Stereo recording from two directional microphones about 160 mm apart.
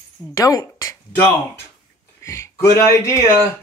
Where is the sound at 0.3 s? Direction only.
20° left (ahead or behind).